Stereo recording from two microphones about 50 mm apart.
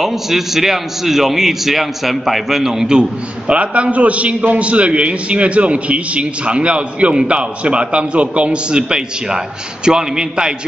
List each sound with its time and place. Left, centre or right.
0.0 s a man's voice: centre